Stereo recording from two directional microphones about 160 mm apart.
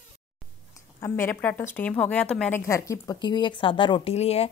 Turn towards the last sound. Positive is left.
turn(degrees=40)  # may be behind; listen again after turning